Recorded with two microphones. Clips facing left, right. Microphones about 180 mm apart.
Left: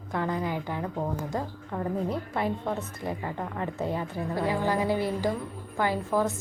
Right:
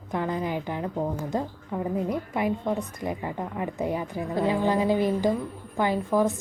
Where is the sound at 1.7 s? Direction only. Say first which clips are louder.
Right 2 dB; 10° right (ahead or behind).